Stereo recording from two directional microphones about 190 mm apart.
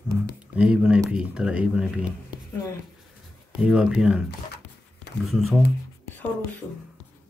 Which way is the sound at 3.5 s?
5° right (ahead or behind).